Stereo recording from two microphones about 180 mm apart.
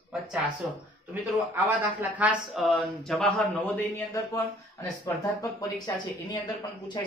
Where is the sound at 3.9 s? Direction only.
15° left (ahead or behind).